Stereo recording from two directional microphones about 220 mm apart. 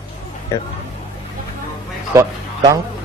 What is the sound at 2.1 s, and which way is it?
Speech, 15° right (ahead or behind).